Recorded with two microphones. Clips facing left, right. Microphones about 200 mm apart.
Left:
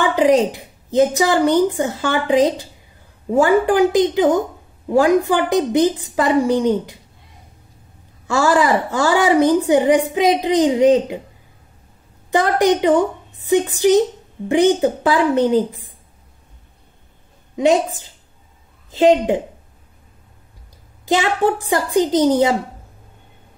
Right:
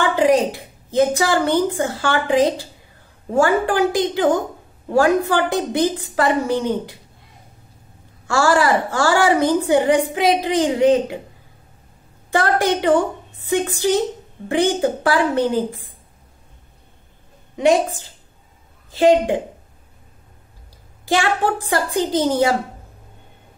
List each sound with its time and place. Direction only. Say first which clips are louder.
0.0 s a woman's voice: left 2 dB; 15° left (ahead or behind)
8.3 s a woman's voice: left 1 dB; 20° left (ahead or behind)
12.3 s a woman's voice: left 3 dB; 15° left (ahead or behind)
17.6 s a woman's voice: left 1 dB; 15° left (ahead or behind)
21.0 s a woman's voice: left 2 dB; 20° left (ahead or behind)